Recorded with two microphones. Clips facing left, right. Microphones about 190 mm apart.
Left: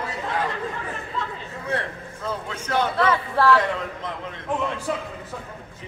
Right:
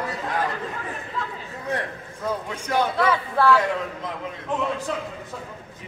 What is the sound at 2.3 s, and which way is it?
A man's voice, 15° right (ahead or behind).